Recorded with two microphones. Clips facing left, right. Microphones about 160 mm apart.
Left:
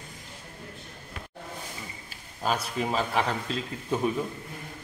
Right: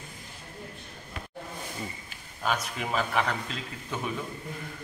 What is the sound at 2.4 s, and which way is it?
A man's voice, 30° left (ahead or behind).